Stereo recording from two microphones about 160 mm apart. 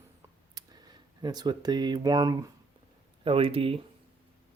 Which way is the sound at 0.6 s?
25° right (ahead or behind).